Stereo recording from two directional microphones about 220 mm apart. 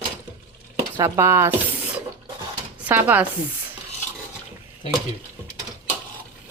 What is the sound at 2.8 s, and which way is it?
Speech, 10° right (ahead or behind).